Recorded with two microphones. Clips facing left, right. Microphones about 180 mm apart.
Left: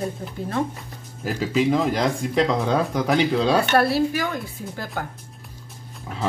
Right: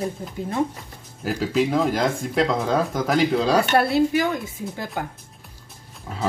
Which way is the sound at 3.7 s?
20° right (ahead or behind).